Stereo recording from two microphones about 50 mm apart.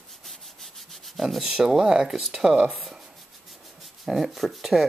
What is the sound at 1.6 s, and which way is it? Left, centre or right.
Speech, centre.